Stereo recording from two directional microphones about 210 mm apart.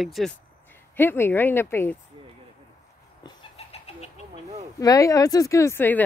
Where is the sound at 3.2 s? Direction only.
25° left (ahead or behind).